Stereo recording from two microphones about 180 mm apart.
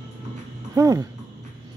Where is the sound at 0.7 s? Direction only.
20° right (ahead or behind).